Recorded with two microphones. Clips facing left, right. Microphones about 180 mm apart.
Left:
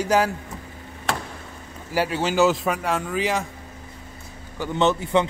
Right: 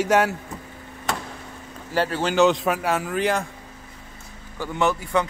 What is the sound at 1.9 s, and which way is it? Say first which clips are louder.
Speech: even; 10° left (ahead or behind).